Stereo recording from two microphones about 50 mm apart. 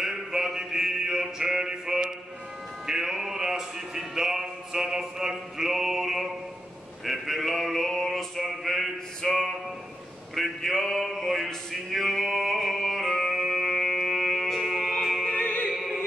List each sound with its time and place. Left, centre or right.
0.0 s mantra: centre
2.9 s a sound: centre
10.3 s music: centre
15.3 s music: left
15.7 s music: centre